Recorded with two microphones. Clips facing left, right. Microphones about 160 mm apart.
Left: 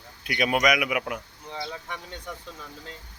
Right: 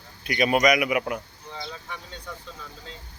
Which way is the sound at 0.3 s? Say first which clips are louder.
Right 3 dB; centre (ahead or behind).